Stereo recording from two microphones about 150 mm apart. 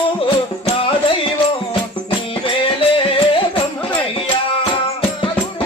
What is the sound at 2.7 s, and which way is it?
Music, 35° left (ahead or behind).